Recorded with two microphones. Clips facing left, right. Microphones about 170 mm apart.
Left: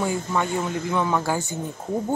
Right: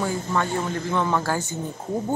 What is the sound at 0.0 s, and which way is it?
Speech, 15° left (ahead or behind).